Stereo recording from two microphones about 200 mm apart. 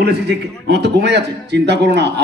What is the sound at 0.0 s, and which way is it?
A man's voice, 55° right (ahead or behind).